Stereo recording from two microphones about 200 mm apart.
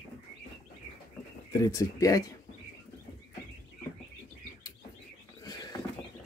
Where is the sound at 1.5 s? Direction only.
15° left (ahead or behind).